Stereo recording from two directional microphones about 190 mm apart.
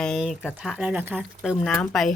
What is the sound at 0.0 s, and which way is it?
Speech, centre (ahead or behind).